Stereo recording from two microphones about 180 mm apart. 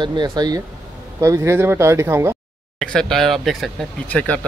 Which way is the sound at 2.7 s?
5° left (ahead or behind).